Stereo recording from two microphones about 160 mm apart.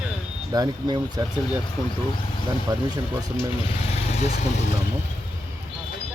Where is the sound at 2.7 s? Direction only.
25° right (ahead or behind).